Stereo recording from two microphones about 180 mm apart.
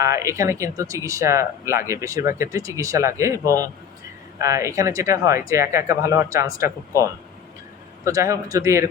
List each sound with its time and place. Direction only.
0.0 s speech: 15° right (ahead or behind)